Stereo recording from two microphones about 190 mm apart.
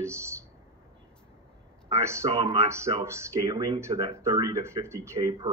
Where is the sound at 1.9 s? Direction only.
15° right (ahead or behind).